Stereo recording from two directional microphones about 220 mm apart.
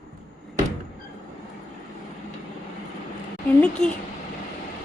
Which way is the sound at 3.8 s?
5° left (ahead or behind).